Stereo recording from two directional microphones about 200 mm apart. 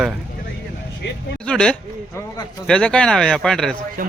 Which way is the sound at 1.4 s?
5° left (ahead or behind).